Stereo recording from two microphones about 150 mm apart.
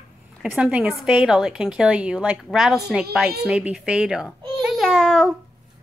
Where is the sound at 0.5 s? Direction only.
5° right (ahead or behind).